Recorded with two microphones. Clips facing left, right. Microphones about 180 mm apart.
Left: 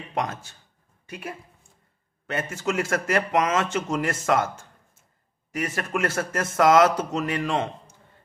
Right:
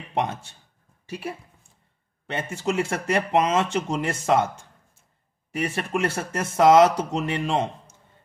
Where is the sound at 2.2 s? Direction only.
30° right (ahead or behind).